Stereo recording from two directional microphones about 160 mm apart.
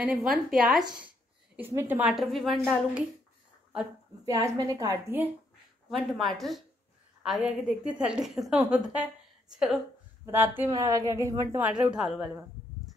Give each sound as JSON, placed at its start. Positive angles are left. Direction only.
{"t": 0.0, "sound": "a woman's voice", "side_deg": -5}
{"t": 4.3, "sound": "a woman's voice", "side_deg": -20}
{"t": 5.9, "sound": "a woman's voice", "side_deg": 0}